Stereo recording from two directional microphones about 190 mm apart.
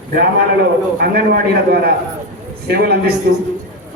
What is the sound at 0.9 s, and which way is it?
A man's voice, 55° right (ahead or behind).